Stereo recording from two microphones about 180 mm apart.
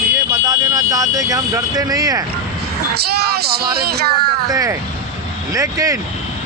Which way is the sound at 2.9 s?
60° right (ahead or behind).